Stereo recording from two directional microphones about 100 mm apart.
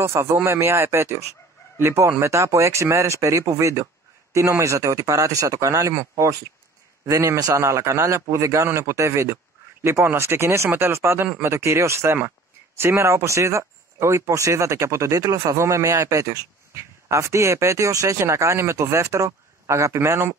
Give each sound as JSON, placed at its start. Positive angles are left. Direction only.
{"t": 0.0, "sound": "speech", "side_deg": -30}
{"t": 7.1, "sound": "speech", "side_deg": -30}